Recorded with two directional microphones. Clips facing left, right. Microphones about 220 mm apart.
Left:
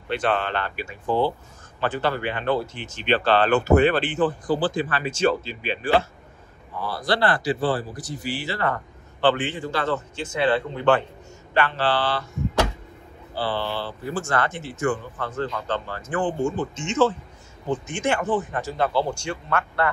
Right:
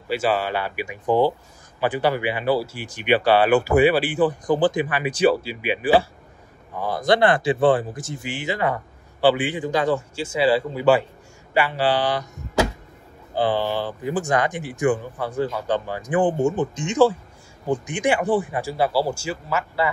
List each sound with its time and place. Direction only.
0.1 s a man's voice: 5° right (ahead or behind)
7.1 s speech: 20° right (ahead or behind)
8.4 s a man's voice: 15° right (ahead or behind)
13.4 s a man's voice: 15° right (ahead or behind)